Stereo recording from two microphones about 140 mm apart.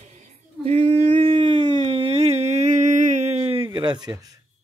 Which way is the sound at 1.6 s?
55° right (ahead or behind).